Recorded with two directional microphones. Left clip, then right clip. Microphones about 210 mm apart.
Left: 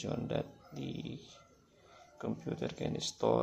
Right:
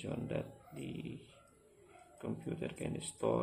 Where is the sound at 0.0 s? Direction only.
20° left (ahead or behind).